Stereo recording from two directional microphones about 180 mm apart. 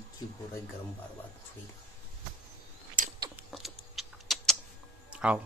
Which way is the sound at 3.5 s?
Centre (ahead or behind).